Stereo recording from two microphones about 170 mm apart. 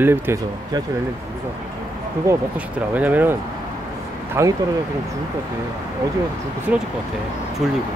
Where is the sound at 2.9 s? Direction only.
10° right (ahead or behind).